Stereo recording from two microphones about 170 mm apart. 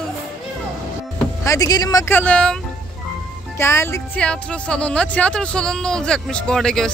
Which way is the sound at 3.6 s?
15° left (ahead or behind).